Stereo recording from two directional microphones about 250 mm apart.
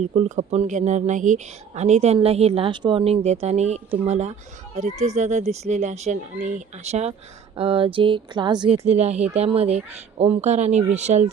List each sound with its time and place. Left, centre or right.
0.0 s speech: right